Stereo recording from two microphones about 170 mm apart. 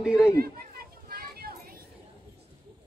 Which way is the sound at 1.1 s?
60° right (ahead or behind).